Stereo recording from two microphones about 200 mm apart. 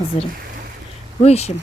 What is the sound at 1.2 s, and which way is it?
Speech, 30° left (ahead or behind).